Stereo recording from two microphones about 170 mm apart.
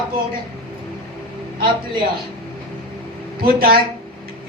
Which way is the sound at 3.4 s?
60° right (ahead or behind).